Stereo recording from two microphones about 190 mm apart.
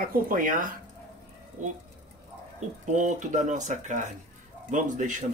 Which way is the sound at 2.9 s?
40° right (ahead or behind).